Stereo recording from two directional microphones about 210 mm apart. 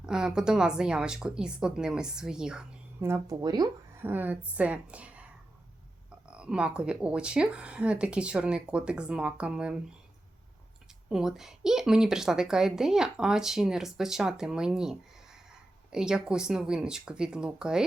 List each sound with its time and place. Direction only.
0.0 s a woman's voice: 5° right (ahead or behind)
6.3 s a woman's voice: 5° right (ahead or behind)
11.1 s a woman's voice: centre (ahead or behind)